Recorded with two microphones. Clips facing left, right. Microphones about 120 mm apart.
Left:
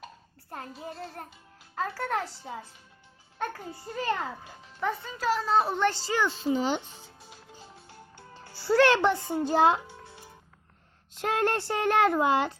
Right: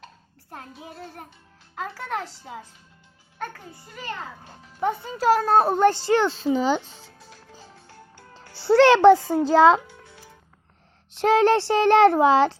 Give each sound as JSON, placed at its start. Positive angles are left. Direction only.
{"t": 0.5, "sound": "child singing", "side_deg": 0}
{"t": 3.7, "sound": "a child's voice", "side_deg": 35}
{"t": 4.4, "sound": "a child's voice", "side_deg": -25}
{"t": 5.3, "sound": "a child's voice", "side_deg": -50}
{"t": 6.4, "sound": "a child's voice", "side_deg": -90}
{"t": 7.9, "sound": "music", "side_deg": 20}
{"t": 8.6, "sound": "a child's voice", "side_deg": -80}
{"t": 11.1, "sound": "a child's voice", "side_deg": -85}